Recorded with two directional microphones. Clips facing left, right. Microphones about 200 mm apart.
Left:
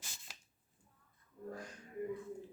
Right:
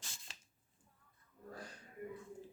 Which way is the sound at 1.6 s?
35° right (ahead or behind).